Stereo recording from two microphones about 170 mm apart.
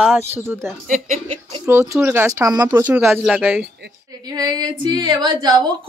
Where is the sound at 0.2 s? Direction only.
15° right (ahead or behind).